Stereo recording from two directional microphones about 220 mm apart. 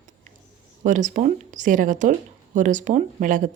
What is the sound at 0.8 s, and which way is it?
Speech, 35° right (ahead or behind).